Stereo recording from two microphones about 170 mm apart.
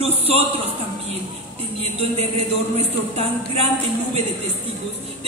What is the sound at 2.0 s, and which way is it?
Speech, 40° right (ahead or behind).